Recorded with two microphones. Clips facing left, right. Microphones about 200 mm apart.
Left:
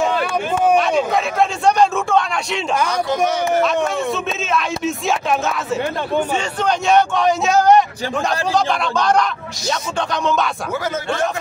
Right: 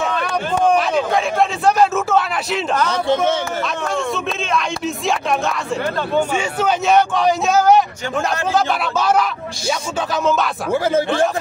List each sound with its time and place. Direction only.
0.2 s a man's voice: centre (ahead or behind)
3.6 s a man's voice: centre (ahead or behind)
10.7 s speech: 30° right (ahead or behind)